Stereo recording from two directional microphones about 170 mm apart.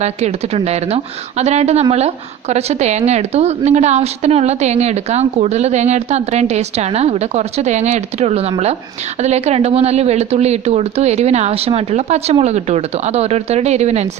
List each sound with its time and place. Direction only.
0.0 s speech: 40° right (ahead or behind)